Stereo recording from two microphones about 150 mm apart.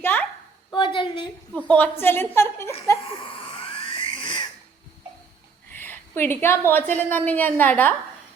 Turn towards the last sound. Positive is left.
turn(degrees=10)  # may be behind; listen again after turning